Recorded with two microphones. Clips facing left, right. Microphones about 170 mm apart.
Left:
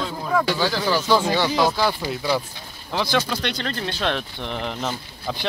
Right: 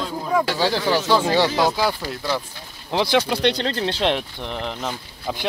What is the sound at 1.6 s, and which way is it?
Speech, 15° right (ahead or behind).